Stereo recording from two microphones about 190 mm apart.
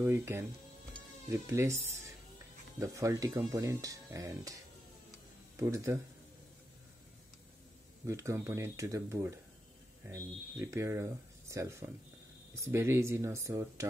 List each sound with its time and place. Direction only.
0.0 s speech: 10° right (ahead or behind)
5.6 s speech: 15° right (ahead or behind)
8.1 s speech: 15° right (ahead or behind)